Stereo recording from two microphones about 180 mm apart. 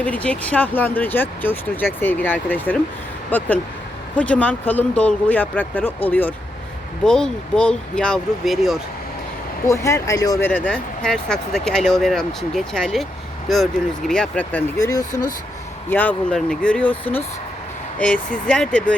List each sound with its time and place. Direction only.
0.0 s speech: 5° left (ahead or behind)
9.6 s speech: 15° left (ahead or behind)
10.5 s speech: 5° left (ahead or behind)
18.4 s speech: 5° left (ahead or behind)